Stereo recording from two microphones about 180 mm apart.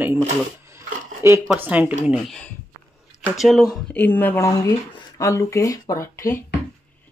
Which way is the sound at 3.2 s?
Centre (ahead or behind).